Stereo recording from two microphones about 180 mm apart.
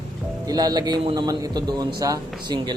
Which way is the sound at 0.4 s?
20° right (ahead or behind).